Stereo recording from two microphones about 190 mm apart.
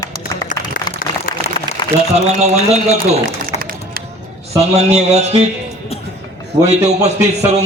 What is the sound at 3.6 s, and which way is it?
Music, 50° right (ahead or behind).